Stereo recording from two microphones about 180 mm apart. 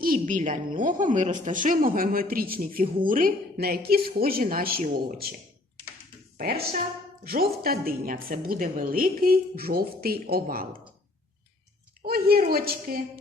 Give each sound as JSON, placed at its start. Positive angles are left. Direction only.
{"t": 0.0, "sound": "a woman's voice", "side_deg": -50}
{"t": 6.3, "sound": "a woman's voice", "side_deg": -55}
{"t": 12.0, "sound": "a woman's voice", "side_deg": -55}